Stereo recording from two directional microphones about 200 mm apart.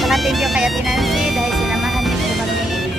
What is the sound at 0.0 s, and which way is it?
Music, centre (ahead or behind).